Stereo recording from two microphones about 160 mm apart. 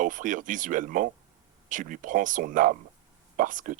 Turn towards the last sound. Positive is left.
turn(degrees=-55)  # may be behind; listen again after turning